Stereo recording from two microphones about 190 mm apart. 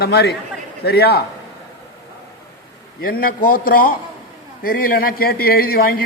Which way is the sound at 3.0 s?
50° left (ahead or behind).